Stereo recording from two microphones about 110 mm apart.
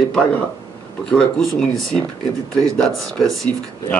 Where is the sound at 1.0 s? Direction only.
5° left (ahead or behind).